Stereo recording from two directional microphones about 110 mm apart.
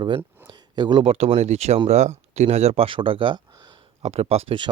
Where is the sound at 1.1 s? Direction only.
65° right (ahead or behind).